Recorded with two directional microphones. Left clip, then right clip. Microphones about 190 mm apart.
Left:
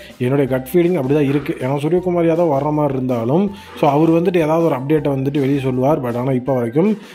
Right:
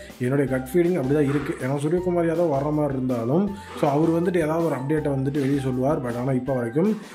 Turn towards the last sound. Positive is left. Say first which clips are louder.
# left 7 dB
turn(degrees=25)  # may be behind; listen again after turning